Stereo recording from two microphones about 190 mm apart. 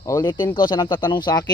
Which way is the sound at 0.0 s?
20° left (ahead or behind).